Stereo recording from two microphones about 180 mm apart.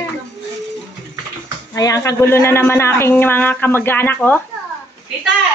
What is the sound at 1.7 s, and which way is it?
Speech, 15° left (ahead or behind).